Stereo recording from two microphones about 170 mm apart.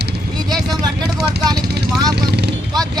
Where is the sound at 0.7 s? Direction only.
20° right (ahead or behind).